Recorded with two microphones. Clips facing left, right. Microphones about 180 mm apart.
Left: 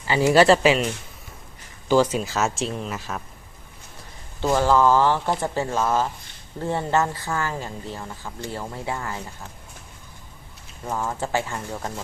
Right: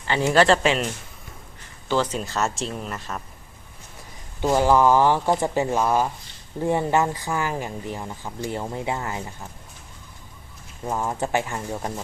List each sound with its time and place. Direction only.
0.1 s speech: 5° left (ahead or behind)
1.9 s speech: 5° left (ahead or behind)
4.4 s speech: 15° right (ahead or behind)
10.8 s speech: 20° right (ahead or behind)